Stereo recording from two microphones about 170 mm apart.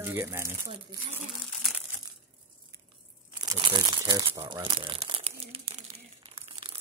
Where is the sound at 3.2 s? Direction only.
25° right (ahead or behind).